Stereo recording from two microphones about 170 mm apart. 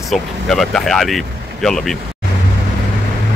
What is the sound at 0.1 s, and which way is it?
Speech, centre (ahead or behind).